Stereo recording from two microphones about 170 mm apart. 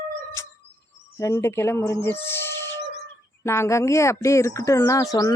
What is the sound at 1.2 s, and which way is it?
Speech, 15° left (ahead or behind).